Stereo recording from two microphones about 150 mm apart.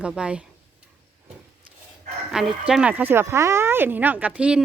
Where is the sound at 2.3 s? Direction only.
5° right (ahead or behind).